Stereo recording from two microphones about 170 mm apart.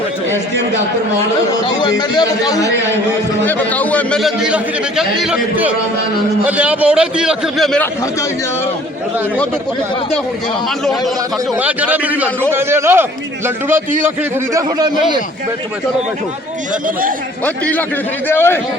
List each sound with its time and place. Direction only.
1.6 s a man's voice: 25° left (ahead or behind)
3.4 s a man's voice: 10° left (ahead or behind)
11.5 s a man's voice: 10° right (ahead or behind)
16.8 s a man's voice: 55° right (ahead or behind)
17.4 s a man's voice: 10° left (ahead or behind)